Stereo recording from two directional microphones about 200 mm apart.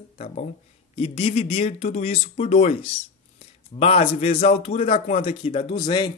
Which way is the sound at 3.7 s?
30° left (ahead or behind).